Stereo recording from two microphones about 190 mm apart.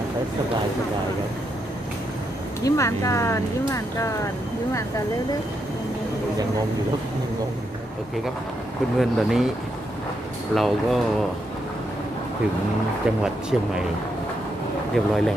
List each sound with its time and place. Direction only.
2.6 s speech: 15° left (ahead or behind)
9.0 s speech: centre (ahead or behind)
10.5 s speech: centre (ahead or behind)
13.2 s speech: 5° right (ahead or behind)
14.9 s speech: centre (ahead or behind)